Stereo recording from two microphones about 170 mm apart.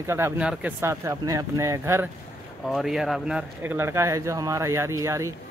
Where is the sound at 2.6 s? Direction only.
Centre (ahead or behind).